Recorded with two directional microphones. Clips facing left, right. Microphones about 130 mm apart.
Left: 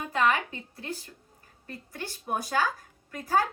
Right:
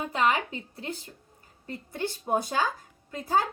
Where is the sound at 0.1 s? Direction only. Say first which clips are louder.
Left 1 dB; 20° right (ahead or behind).